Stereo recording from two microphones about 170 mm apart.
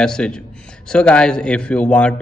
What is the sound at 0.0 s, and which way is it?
A man's voice, 5° left (ahead or behind).